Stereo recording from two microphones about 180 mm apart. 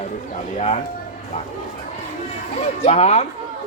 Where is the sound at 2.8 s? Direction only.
35° left (ahead or behind).